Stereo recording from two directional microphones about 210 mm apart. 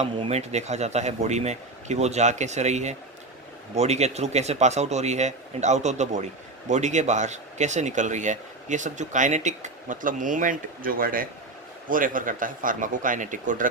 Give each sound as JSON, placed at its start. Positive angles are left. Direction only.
{"t": 0.0, "sound": "speech", "side_deg": -30}